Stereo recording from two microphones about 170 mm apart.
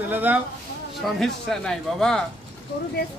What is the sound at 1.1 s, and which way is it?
Speech, centre (ahead or behind).